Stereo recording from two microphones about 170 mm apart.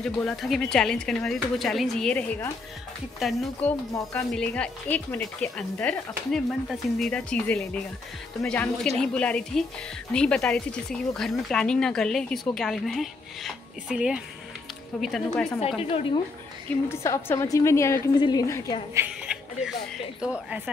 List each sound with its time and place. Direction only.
0.0 s speech: 5° left (ahead or behind)
3.9 s a woman's voice: 15° left (ahead or behind)
15.8 s a woman's voice: 35° left (ahead or behind)
16.9 s a woman's voice: 15° left (ahead or behind)
18.9 s a sound: 5° right (ahead or behind)
20.2 s speech: 5° right (ahead or behind)